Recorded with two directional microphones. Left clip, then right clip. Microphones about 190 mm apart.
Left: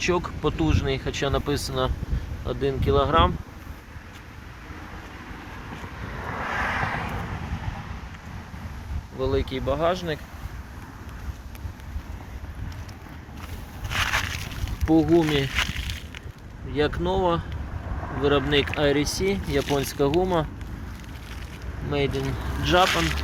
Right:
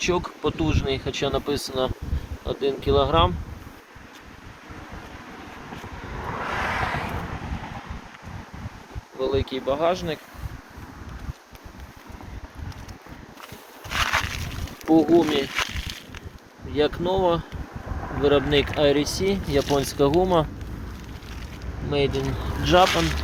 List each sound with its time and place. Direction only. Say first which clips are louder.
0.0 s speech: even; 5° right (ahead or behind)
6.2 s vehicle: even; 50° right (ahead or behind)
9.1 s speech: right 1 dB; 5° right (ahead or behind)
13.9 s a sound: right 2 dB; 10° right (ahead or behind)
14.8 s speech: right 2 dB; 15° right (ahead or behind)
16.7 s speech: right 2 dB; 10° right (ahead or behind)
21.8 s speech: right 2 dB; 5° right (ahead or behind)
22.6 s speech: right 2 dB; 20° right (ahead or behind)